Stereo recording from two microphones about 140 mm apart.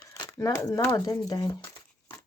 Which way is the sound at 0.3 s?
20° left (ahead or behind).